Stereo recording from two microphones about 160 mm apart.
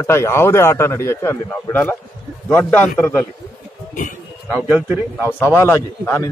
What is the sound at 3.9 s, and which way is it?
Speech, 55° left (ahead or behind).